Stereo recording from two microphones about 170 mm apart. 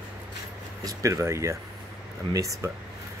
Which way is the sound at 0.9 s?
15° right (ahead or behind).